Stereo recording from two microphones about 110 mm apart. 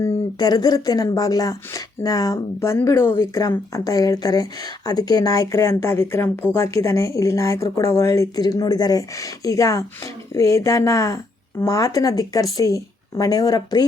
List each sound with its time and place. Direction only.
0.0 s speech: 35° left (ahead or behind)